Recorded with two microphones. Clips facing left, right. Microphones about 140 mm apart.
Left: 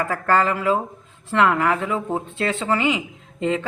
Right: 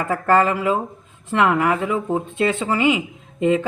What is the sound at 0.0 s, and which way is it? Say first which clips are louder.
A woman's voice: right 2 dB; 20° right (ahead or behind).